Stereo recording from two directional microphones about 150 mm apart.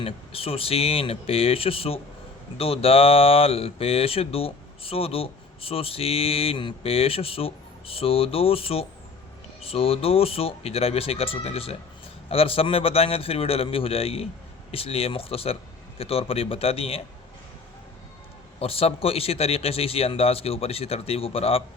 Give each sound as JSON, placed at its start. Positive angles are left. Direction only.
{"t": 0.0, "sound": "speech", "side_deg": 40}
{"t": 18.6, "sound": "speech", "side_deg": 40}